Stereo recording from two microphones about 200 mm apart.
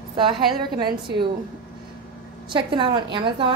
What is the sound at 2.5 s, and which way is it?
A woman's voice, 25° right (ahead or behind).